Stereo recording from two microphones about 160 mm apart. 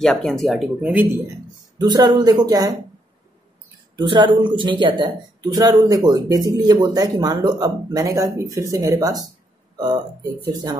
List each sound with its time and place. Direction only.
0.0 s speech: centre (ahead or behind); by 1.3 s 15° right (ahead or behind)
1.8 s speech: 25° right (ahead or behind)
3.9 s speech: 30° right (ahead or behind)
10.4 s speech: 25° right (ahead or behind)